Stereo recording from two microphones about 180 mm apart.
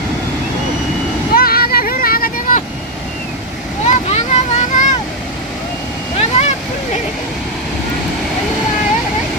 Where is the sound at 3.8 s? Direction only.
40° left (ahead or behind).